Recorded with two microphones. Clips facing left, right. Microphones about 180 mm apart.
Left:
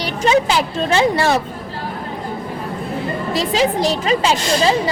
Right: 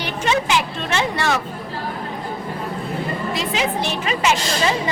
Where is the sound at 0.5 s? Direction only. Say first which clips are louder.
Left 4 dB; 35° left (ahead or behind).